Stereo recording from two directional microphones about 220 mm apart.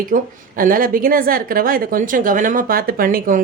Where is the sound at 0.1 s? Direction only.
40° right (ahead or behind).